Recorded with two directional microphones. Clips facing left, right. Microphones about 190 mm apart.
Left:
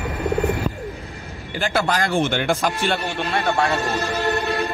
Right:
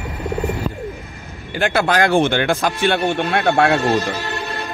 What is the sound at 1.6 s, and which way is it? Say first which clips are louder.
A man's voice: right 5 dB; 65° right (ahead or behind).